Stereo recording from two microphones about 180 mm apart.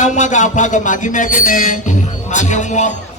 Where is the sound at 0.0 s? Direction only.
40° left (ahead or behind).